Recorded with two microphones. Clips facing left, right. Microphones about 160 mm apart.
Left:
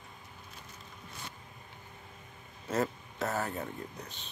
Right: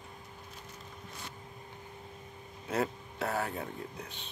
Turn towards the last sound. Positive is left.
turn(degrees=-10)  # may be behind; listen again after turning